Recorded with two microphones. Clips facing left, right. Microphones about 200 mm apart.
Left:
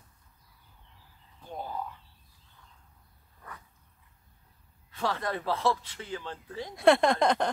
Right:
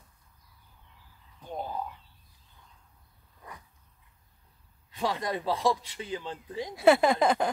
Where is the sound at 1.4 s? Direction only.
20° right (ahead or behind).